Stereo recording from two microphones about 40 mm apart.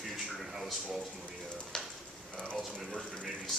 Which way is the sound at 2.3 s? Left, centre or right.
Left.